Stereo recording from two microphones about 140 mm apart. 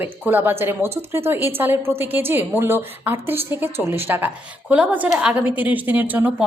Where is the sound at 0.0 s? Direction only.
15° right (ahead or behind).